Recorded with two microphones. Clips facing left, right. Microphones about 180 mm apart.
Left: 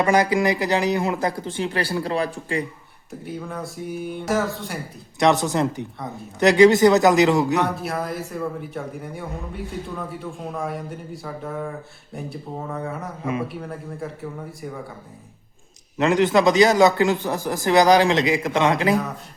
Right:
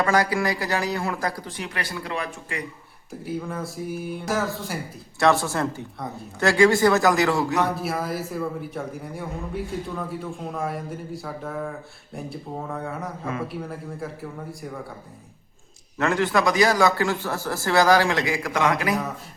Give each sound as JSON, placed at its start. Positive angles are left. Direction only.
{"t": 0.0, "sound": "a man's voice", "side_deg": 20}
{"t": 3.1, "sound": "a man's voice", "side_deg": 0}
{"t": 5.2, "sound": "a man's voice", "side_deg": 20}
{"t": 7.8, "sound": "a man's voice", "side_deg": 0}
{"t": 16.0, "sound": "a man's voice", "side_deg": 20}